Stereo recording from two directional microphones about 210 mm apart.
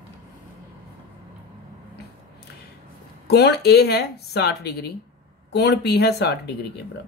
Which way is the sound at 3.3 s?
50° left (ahead or behind).